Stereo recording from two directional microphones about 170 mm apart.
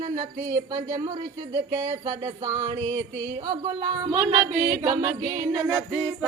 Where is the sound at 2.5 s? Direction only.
25° right (ahead or behind).